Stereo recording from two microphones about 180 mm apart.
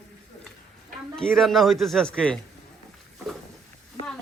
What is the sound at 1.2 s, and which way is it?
A man's voice, centre (ahead or behind).